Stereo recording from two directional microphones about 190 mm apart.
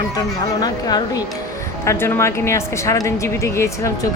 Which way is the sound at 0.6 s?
20° left (ahead or behind).